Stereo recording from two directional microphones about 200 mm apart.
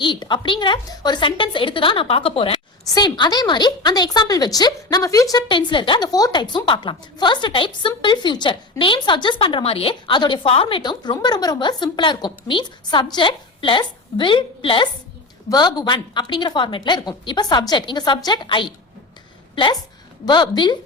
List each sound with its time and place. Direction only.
0.0 s a woman's voice: 25° left (ahead or behind)
20.2 s a woman's voice: 20° left (ahead or behind)